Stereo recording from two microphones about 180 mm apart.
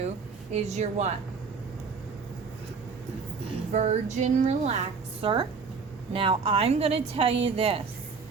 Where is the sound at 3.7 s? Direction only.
40° right (ahead or behind).